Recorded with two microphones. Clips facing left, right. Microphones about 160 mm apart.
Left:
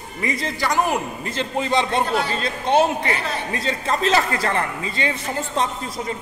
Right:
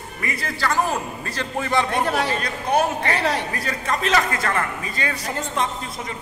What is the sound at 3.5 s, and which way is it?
A man's voice, 25° left (ahead or behind).